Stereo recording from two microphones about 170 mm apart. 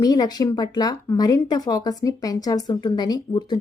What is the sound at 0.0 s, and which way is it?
A woman's voice, 25° left (ahead or behind).